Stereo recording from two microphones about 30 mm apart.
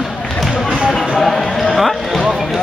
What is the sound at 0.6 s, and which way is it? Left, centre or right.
Speech, right.